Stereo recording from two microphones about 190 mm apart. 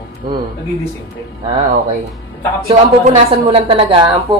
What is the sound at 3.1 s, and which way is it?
A woman's voice, 30° right (ahead or behind).